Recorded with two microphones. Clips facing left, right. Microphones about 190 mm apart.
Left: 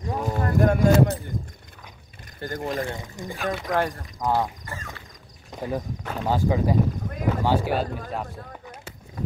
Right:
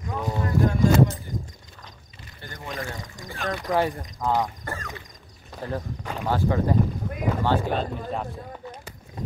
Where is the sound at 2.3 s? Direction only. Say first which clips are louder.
Left 11 dB; 45° left (ahead or behind).